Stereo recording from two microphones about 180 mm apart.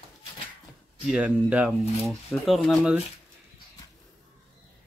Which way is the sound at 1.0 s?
5° right (ahead or behind).